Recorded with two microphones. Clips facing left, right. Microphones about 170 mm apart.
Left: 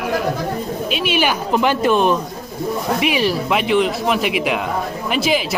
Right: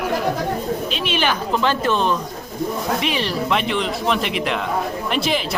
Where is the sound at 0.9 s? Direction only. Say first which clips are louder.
Left 6 dB; 10° left (ahead or behind).